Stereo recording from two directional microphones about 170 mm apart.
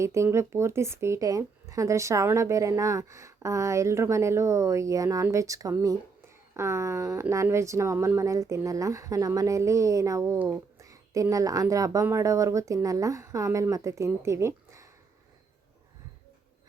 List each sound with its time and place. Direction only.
0.0 s speech: 15° right (ahead or behind)